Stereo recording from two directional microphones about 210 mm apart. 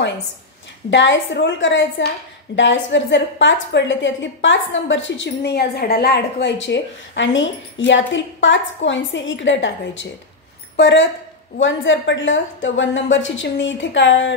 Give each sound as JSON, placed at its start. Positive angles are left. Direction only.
{"t": 0.8, "sound": "a woman's voice", "side_deg": 60}